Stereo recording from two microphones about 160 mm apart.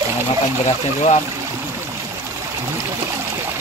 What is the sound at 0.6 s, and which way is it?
Speech, 45° left (ahead or behind).